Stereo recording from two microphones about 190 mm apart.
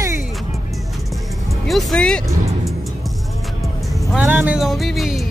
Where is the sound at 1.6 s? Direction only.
Centre (ahead or behind).